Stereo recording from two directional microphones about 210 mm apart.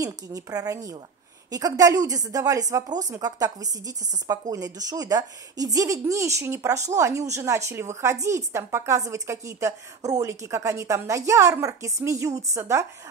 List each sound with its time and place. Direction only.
0.0 s a woman's voice: 15° right (ahead or behind)